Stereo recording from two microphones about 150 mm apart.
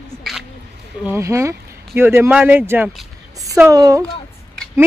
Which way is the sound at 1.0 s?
20° right (ahead or behind).